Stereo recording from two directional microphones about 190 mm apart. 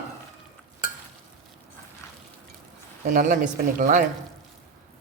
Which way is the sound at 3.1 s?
40° right (ahead or behind).